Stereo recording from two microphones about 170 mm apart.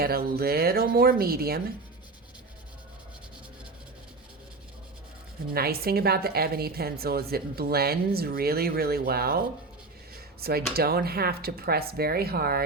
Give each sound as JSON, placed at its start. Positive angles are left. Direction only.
{"t": 0.0, "sound": "a woman's voice", "side_deg": -65}
{"t": 5.5, "sound": "a woman's voice", "side_deg": -65}
{"t": 10.4, "sound": "a woman's voice", "side_deg": -65}